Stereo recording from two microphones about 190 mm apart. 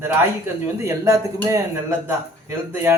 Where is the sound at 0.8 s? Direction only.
15° right (ahead or behind).